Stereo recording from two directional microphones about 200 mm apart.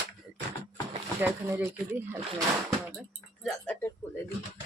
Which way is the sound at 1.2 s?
10° right (ahead or behind).